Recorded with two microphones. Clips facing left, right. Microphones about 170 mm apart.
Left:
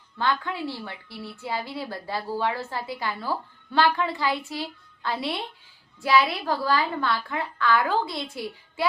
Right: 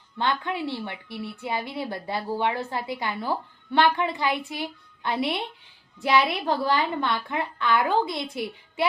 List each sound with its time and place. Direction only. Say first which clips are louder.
0.2 s a woman's voice: even; 20° right (ahead or behind)